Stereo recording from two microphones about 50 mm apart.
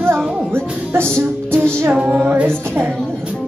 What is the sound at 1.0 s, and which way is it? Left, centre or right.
Music, centre.